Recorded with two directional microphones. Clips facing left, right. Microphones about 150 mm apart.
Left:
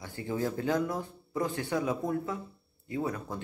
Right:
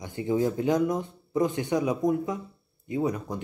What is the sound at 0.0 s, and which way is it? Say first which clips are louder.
Speech: right 7 dB; 20° right (ahead or behind).